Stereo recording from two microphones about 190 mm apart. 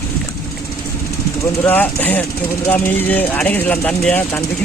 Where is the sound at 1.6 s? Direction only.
10° left (ahead or behind).